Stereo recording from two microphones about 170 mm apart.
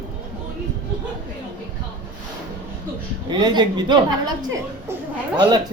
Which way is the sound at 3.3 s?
25° right (ahead or behind).